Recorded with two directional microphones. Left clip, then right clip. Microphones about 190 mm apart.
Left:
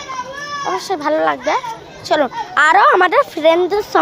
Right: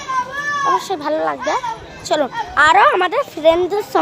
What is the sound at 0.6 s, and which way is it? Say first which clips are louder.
A child's voice: left 1 dB; 20° left (ahead or behind).